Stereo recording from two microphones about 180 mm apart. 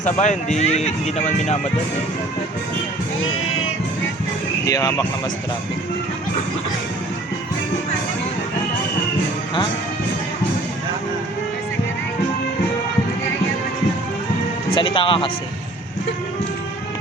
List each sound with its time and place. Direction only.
0.0 s speech: 40° left (ahead or behind)
4.6 s speech: 20° left (ahead or behind)
14.8 s speech: 30° left (ahead or behind)